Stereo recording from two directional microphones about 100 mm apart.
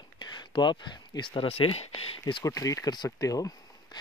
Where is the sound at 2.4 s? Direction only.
35° left (ahead or behind).